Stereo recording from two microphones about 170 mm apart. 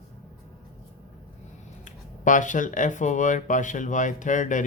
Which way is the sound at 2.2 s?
50° left (ahead or behind).